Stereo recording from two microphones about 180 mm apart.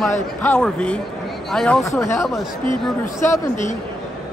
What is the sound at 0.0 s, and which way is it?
A man's voice, 5° left (ahead or behind).